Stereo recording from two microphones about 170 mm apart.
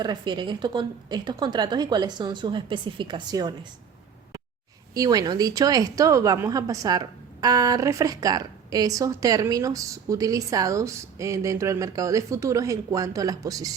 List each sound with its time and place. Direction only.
0.0 s a woman's voice: 25° right (ahead or behind)
4.9 s a woman's voice: 20° right (ahead or behind)